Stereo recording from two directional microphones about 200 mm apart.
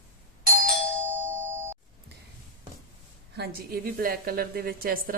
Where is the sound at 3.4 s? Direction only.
45° right (ahead or behind).